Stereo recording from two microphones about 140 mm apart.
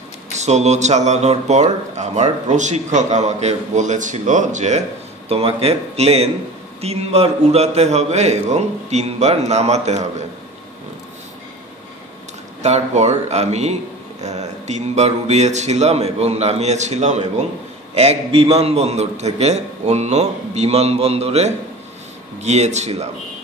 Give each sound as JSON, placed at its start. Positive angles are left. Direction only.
{"t": 0.3, "sound": "speech", "side_deg": -55}
{"t": 5.3, "sound": "a man's voice", "side_deg": -45}
{"t": 12.6, "sound": "a man's voice", "side_deg": -55}